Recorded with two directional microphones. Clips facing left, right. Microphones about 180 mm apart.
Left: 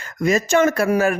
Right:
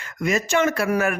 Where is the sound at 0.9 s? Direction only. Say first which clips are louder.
Left 4 dB; 30° left (ahead or behind).